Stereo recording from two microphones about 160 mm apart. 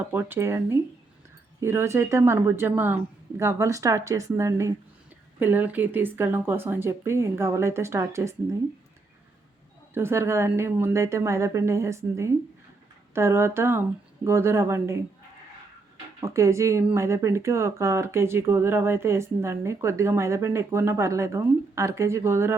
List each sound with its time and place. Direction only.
0.1 s speech: 15° right (ahead or behind)
1.6 s speech: 15° right (ahead or behind)
9.9 s speech: 15° right (ahead or behind)
16.2 s speech: 20° right (ahead or behind)